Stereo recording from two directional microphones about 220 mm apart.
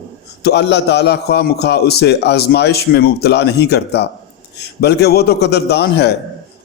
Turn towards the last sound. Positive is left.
turn(degrees=50)  # may be behind; listen again after turning